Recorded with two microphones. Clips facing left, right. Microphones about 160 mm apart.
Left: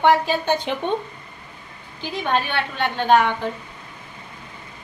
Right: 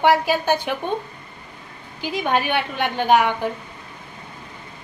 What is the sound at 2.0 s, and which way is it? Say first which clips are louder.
A woman's voice: right 1 dB; 10° right (ahead or behind).